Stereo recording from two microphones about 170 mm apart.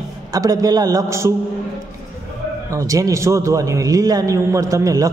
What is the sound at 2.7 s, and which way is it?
A man's voice, 20° right (ahead or behind).